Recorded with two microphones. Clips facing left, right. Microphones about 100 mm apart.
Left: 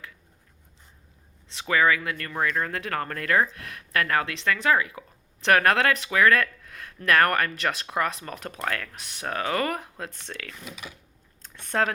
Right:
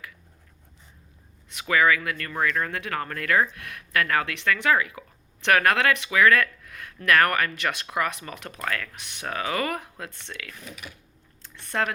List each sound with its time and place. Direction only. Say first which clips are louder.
1.5 s speech: right 1 dB; 30° left (ahead or behind)
10.1 s speech: left 1 dB; 50° left (ahead or behind)
11.4 s typing: left 2 dB; 50° left (ahead or behind)